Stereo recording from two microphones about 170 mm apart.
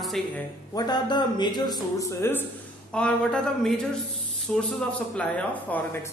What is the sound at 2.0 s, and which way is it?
A man's voice, 15° left (ahead or behind).